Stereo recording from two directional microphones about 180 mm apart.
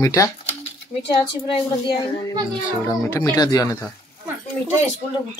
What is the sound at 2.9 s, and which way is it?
Speech, 15° left (ahead or behind).